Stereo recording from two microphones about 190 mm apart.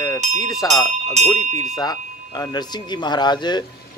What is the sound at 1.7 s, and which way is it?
Speech, 20° left (ahead or behind).